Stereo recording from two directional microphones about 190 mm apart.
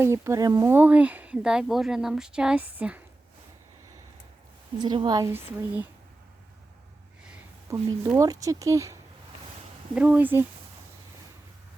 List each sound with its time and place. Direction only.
0.0 s speech: 15° right (ahead or behind)
4.8 s speech: 25° right (ahead or behind)
7.7 s speech: 15° right (ahead or behind)
9.9 s speech: 5° right (ahead or behind)